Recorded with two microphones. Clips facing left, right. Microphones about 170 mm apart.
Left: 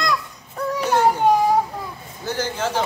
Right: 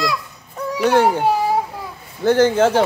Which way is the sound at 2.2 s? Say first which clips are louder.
Right 11 dB; 55° right (ahead or behind).